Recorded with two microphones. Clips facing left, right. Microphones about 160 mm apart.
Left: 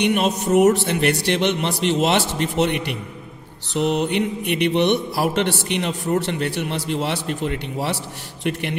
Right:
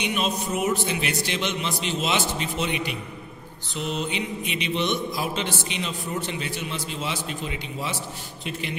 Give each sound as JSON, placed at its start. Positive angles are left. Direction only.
{"t": 0.0, "sound": "a man's voice", "side_deg": 65}